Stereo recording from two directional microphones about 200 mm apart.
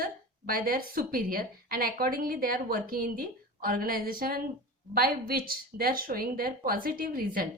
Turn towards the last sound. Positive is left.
turn(degrees=-45)  # may be behind; listen again after turning